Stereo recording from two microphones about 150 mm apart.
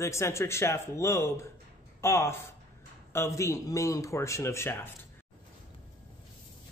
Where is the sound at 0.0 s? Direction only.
20° left (ahead or behind).